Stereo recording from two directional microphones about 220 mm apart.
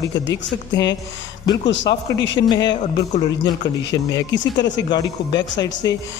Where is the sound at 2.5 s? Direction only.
20° left (ahead or behind).